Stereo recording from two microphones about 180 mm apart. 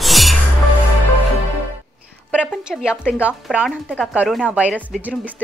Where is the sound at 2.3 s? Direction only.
5° right (ahead or behind).